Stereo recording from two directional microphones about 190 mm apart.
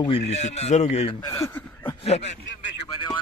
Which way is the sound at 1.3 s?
15° left (ahead or behind).